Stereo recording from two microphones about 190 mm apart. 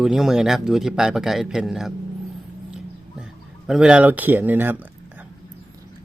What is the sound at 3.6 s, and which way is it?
Speech, 5° right (ahead or behind).